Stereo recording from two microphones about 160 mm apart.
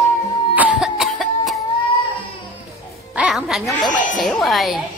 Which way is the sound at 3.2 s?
5° right (ahead or behind).